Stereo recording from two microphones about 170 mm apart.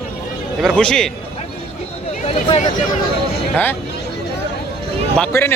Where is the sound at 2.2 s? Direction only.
40° left (ahead or behind).